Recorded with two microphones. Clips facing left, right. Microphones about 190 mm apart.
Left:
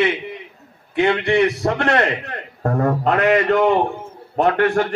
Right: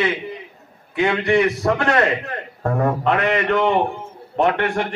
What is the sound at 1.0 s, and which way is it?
A man's voice, 30° left (ahead or behind).